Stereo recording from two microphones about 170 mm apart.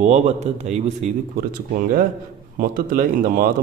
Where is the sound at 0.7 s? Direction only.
40° right (ahead or behind).